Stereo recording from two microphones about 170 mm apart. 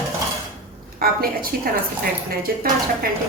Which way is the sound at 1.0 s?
60° right (ahead or behind).